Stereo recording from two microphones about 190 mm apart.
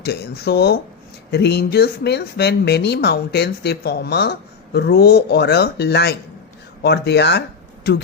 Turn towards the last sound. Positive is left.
turn(degrees=60)  # may be behind; listen again after turning